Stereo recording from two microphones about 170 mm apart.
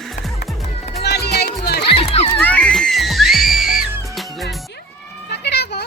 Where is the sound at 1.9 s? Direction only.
35° left (ahead or behind).